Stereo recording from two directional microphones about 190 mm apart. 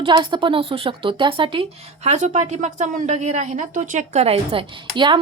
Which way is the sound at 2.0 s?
35° right (ahead or behind).